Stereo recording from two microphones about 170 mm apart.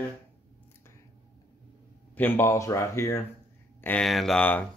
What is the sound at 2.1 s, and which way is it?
Speech, 10° left (ahead or behind).